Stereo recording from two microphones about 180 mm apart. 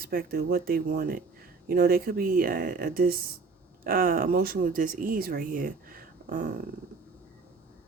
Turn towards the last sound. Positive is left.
turn(degrees=-50)  # may be behind; listen again after turning